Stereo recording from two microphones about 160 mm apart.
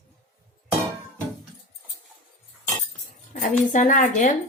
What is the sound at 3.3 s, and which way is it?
A woman's voice, 50° left (ahead or behind).